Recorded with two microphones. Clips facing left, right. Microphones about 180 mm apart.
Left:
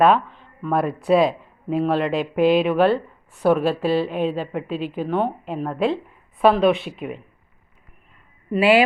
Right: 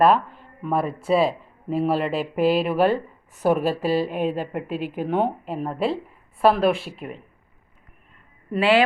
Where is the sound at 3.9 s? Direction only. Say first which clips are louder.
Left 1 dB; 10° right (ahead or behind).